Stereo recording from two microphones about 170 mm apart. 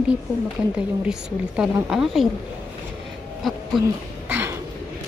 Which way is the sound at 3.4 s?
Centre (ahead or behind).